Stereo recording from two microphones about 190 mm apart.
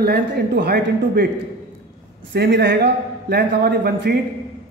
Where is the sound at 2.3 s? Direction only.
60° right (ahead or behind).